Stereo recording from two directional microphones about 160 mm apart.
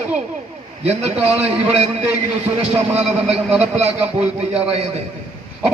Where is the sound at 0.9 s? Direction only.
40° right (ahead or behind).